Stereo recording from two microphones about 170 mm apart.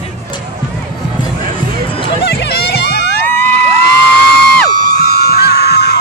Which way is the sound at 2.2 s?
75° left (ahead or behind).